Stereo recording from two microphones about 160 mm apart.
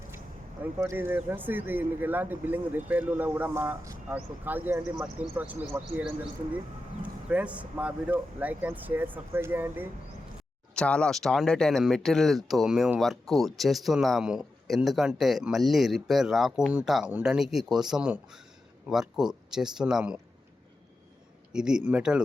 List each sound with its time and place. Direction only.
0.6 s speech: 15° right (ahead or behind)
10.8 s speech: 5° left (ahead or behind)
21.5 s speech: 5° right (ahead or behind)